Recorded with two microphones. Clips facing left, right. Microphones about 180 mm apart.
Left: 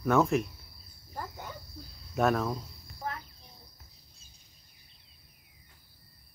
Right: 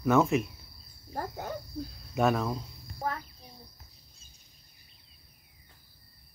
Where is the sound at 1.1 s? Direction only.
45° right (ahead or behind).